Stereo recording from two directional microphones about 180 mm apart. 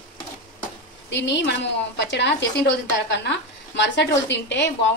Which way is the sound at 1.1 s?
75° left (ahead or behind).